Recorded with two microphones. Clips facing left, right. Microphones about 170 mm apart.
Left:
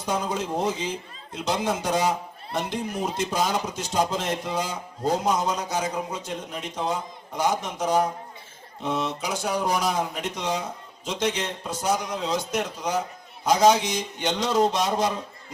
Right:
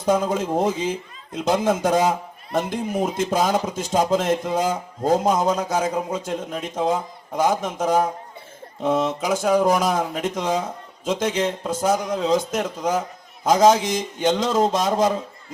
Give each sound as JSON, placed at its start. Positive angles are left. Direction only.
{"t": 0.0, "sound": "speech", "side_deg": -50}